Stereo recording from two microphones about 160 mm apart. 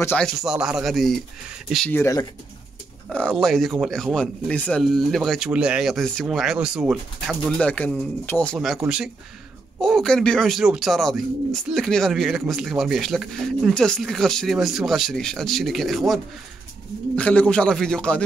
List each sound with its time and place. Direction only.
0.0 s a man's voice: 10° left (ahead or behind)
0.3 s speech: 5° right (ahead or behind)
1.9 s a man's voice: 15° left (ahead or behind)
3.1 s a man's voice: 5° left (ahead or behind)
8.5 s a man's voice: 5° right (ahead or behind)